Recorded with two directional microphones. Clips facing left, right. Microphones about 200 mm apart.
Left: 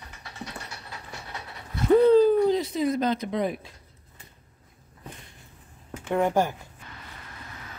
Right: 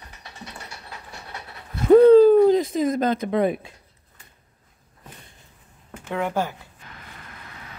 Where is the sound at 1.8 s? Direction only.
55° right (ahead or behind).